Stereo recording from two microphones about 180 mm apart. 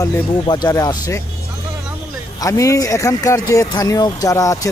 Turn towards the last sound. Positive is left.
turn(degrees=20)  # may be behind; listen again after turning